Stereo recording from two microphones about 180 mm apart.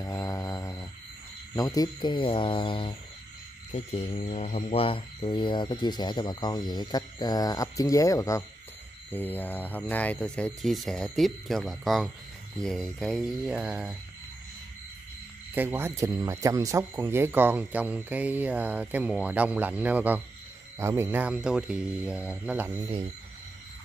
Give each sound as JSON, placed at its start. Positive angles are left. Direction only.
{"t": 0.0, "sound": "mantra", "side_deg": 20}
{"t": 9.1, "sound": "speech", "side_deg": 10}
{"t": 15.5, "sound": "speech", "side_deg": -10}